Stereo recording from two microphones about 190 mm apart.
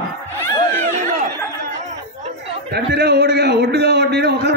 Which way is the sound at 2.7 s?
60° right (ahead or behind).